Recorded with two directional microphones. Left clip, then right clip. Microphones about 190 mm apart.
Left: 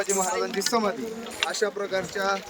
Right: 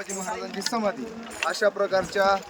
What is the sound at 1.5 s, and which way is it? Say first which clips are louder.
Speech: right 6 dB; 30° right (ahead or behind).